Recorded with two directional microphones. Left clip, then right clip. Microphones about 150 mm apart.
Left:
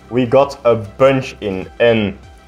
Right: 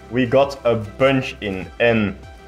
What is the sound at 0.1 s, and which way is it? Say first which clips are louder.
Speech: left 4 dB; 20° left (ahead or behind).